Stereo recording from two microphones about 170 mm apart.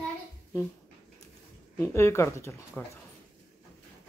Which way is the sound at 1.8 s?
15° left (ahead or behind).